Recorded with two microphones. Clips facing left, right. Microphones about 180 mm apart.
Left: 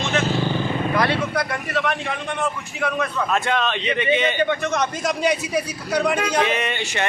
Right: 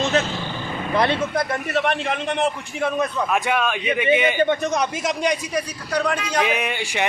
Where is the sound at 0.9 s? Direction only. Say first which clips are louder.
Right 3 dB; 25° right (ahead or behind).